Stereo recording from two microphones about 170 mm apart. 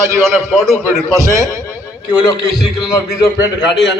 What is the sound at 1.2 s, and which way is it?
Speech, 20° right (ahead or behind).